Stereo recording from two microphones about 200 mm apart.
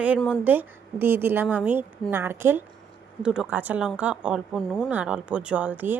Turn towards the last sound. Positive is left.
turn(degrees=-10)  # may be behind; listen again after turning